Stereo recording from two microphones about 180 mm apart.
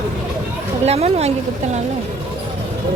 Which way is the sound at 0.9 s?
35° right (ahead or behind).